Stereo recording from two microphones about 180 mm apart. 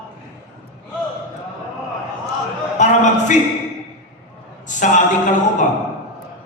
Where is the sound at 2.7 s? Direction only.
40° left (ahead or behind).